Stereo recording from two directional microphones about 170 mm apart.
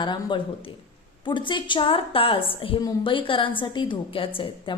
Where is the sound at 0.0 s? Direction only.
25° left (ahead or behind).